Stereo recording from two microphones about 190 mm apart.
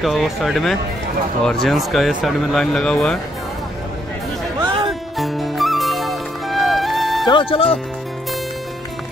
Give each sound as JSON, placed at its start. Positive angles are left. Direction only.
{"t": 0.0, "sound": "speech", "side_deg": 0}
{"t": 4.8, "sound": "music", "side_deg": 0}
{"t": 7.2, "sound": "speech", "side_deg": 25}